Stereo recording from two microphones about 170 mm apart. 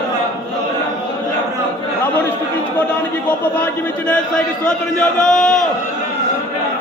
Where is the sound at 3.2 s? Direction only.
5° left (ahead or behind).